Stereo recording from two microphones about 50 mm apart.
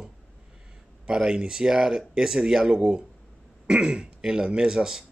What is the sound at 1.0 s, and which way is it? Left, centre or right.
Speech, centre.